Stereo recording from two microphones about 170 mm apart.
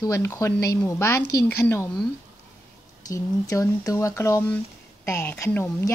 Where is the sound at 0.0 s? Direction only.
15° left (ahead or behind).